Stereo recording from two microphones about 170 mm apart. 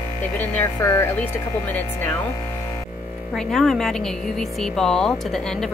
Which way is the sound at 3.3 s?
Centre (ahead or behind).